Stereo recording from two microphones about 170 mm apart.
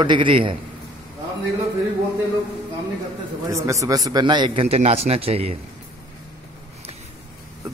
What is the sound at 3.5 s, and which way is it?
A man's voice, 20° right (ahead or behind).